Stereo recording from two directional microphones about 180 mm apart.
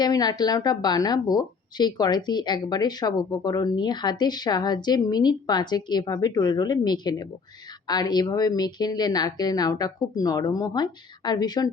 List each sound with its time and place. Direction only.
0.0 s a woman's voice: 20° left (ahead or behind)